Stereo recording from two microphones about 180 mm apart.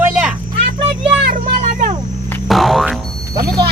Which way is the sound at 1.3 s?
50° right (ahead or behind).